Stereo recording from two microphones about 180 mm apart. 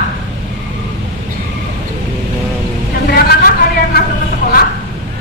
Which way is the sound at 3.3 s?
55° left (ahead or behind).